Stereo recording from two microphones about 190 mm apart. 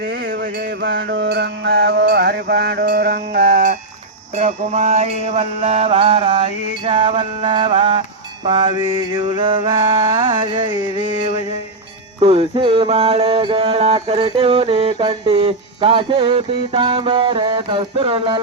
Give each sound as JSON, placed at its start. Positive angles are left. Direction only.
{"t": 0.0, "sound": "music", "side_deg": -60}
{"t": 4.4, "sound": "mantra", "side_deg": -40}
{"t": 8.4, "sound": "music", "side_deg": -25}
{"t": 12.2, "sound": "music", "side_deg": -30}